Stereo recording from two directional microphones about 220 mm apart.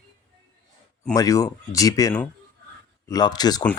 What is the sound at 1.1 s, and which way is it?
Speech, 15° left (ahead or behind).